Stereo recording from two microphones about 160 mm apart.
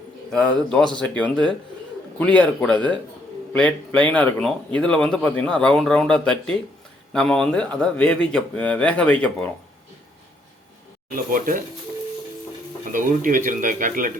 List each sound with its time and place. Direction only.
0.3 s a man's voice: 5° left (ahead or behind)
11.1 s speech: 60° right (ahead or behind)
12.9 s speech: 55° right (ahead or behind)